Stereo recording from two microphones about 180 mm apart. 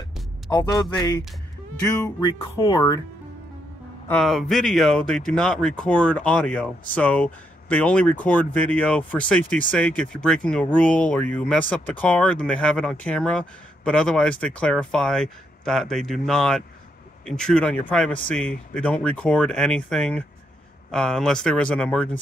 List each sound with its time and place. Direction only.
0.5 s a man's voice: 25° left (ahead or behind)
2.3 s a man's voice: 30° left (ahead or behind)
4.1 s speech: centre (ahead or behind)